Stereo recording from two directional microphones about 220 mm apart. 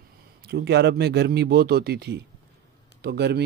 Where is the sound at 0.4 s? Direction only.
45° right (ahead or behind).